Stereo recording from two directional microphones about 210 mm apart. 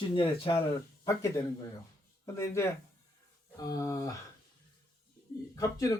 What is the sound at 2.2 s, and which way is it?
Speech, 15° left (ahead or behind).